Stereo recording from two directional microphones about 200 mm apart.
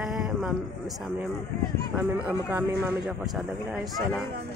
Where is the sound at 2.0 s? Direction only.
5° right (ahead or behind).